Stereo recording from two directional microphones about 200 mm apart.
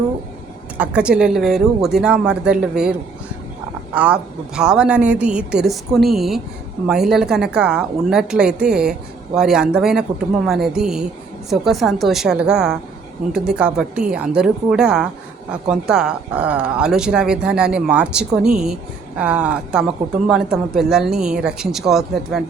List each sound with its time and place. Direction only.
0.8 s speech: 5° right (ahead or behind)
3.9 s speech: 5° right (ahead or behind)